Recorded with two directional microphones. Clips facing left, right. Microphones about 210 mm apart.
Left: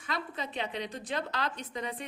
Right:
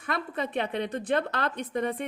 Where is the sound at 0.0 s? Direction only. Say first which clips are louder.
Right 6 dB; 60° right (ahead or behind).